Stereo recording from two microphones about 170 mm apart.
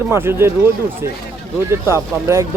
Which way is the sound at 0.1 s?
15° right (ahead or behind).